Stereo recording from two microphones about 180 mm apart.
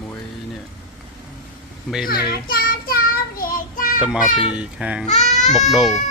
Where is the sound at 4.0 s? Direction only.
5° right (ahead or behind).